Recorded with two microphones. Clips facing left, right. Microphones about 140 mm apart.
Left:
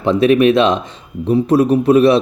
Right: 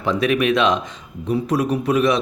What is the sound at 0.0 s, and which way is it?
Speech, 25° left (ahead or behind).